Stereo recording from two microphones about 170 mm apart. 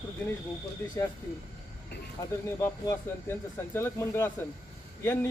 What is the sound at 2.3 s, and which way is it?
Speech, 15° left (ahead or behind).